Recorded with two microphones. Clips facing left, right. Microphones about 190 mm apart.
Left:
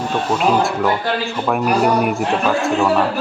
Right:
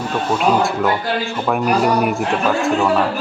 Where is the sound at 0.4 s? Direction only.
Centre (ahead or behind).